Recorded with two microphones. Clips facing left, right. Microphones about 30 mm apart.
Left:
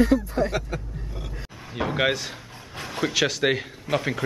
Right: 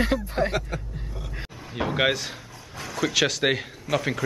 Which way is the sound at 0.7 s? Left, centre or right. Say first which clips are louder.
Left 1 dB; centre.